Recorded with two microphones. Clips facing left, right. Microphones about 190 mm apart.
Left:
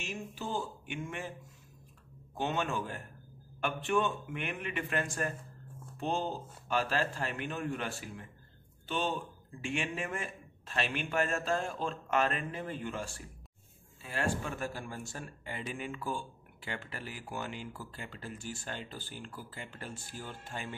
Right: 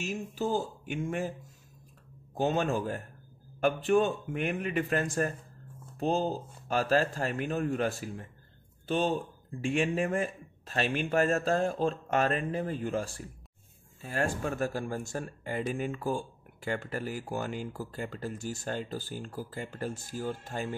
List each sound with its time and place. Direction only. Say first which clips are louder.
0.0 s a man's voice: right 7 dB; 40° right (ahead or behind)
2.3 s a man's voice: right 6 dB; 40° right (ahead or behind)